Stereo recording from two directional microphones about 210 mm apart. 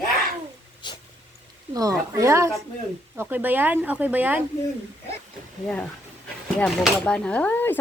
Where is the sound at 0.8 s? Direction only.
20° left (ahead or behind).